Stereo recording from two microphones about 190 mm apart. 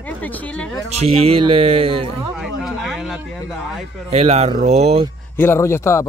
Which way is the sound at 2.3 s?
Centre (ahead or behind).